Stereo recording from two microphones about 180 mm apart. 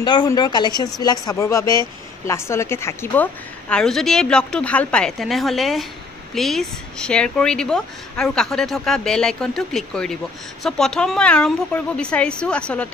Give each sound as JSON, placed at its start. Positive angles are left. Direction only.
{"t": 0.0, "sound": "a woman's voice", "side_deg": 25}